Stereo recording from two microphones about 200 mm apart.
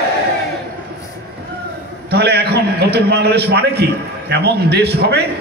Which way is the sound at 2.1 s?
55° right (ahead or behind).